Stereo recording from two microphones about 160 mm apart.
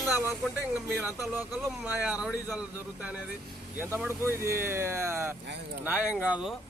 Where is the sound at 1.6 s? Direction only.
10° right (ahead or behind).